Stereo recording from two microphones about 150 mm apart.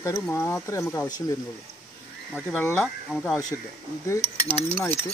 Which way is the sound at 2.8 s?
5° left (ahead or behind).